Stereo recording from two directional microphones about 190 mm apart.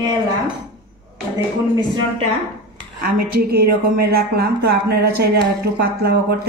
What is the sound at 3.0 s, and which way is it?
Speech, 55° right (ahead or behind).